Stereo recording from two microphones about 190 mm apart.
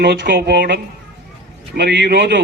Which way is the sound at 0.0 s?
60° right (ahead or behind).